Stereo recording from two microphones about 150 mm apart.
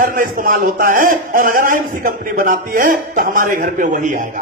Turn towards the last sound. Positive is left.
turn(degrees=-65)  # may be behind; listen again after turning